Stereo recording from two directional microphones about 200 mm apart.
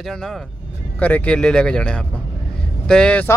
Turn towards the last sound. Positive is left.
turn(degrees=5)  # may be behind; listen again after turning